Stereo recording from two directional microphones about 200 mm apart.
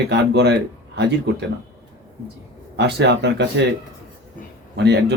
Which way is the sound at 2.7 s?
60° right (ahead or behind).